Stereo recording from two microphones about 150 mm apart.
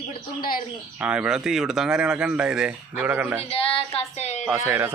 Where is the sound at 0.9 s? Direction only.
10° right (ahead or behind).